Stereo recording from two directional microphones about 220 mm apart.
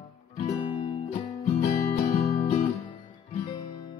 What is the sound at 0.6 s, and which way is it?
Music, 25° left (ahead or behind).